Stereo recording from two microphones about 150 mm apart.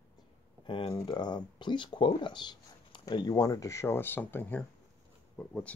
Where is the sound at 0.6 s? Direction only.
35° left (ahead or behind).